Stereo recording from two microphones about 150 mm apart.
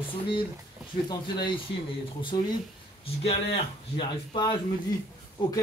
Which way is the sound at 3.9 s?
35° left (ahead or behind).